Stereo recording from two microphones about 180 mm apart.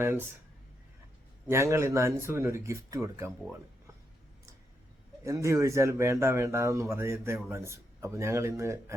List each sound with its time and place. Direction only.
0.0 s speech: 15° right (ahead or behind)
1.5 s speech: 15° right (ahead or behind)
5.2 s speech: 15° right (ahead or behind)